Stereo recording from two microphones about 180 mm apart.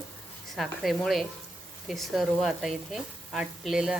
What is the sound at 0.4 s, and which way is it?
Speech, centre (ahead or behind).